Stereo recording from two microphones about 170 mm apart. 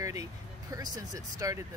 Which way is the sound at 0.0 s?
20° right (ahead or behind).